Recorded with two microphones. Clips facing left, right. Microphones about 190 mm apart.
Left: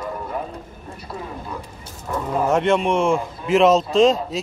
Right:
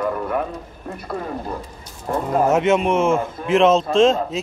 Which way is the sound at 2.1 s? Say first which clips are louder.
Right 3 dB; 50° right (ahead or behind).